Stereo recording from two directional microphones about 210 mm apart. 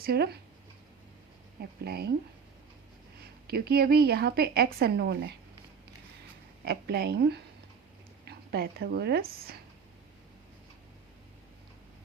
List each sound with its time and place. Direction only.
0.0 s speech: 50° right (ahead or behind)
1.8 s speech: 50° right (ahead or behind)
3.4 s speech: 45° right (ahead or behind)
6.7 s speech: 50° right (ahead or behind)